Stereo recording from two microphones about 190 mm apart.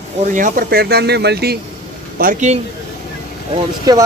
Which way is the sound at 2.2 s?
45° right (ahead or behind).